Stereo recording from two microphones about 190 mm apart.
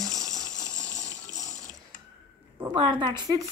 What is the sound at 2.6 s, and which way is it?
Speech, 25° right (ahead or behind).